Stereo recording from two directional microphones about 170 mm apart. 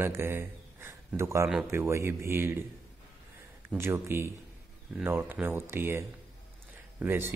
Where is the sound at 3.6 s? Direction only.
15° right (ahead or behind).